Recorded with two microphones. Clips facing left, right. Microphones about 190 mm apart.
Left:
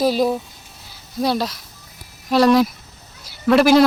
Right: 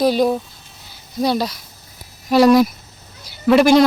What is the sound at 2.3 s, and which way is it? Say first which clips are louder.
Speech: right 3 dB; 5° right (ahead or behind).